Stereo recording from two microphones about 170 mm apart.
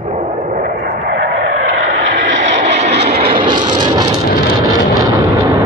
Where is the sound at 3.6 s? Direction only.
25° right (ahead or behind).